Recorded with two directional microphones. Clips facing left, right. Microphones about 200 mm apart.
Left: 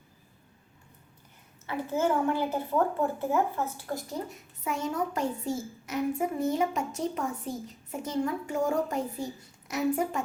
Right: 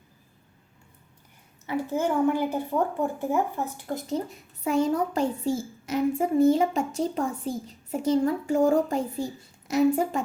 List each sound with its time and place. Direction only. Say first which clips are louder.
1.6 s a woman's voice: right 2 dB; 15° right (ahead or behind)
4.6 s a child's voice: right 7 dB; 35° right (ahead or behind)